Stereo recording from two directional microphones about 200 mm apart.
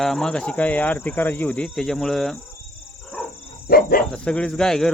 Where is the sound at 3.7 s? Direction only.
45° left (ahead or behind).